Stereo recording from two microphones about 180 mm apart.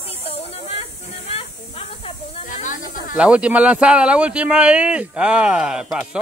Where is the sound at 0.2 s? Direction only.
35° left (ahead or behind).